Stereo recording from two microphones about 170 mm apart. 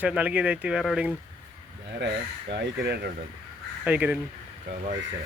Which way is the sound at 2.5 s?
80° right.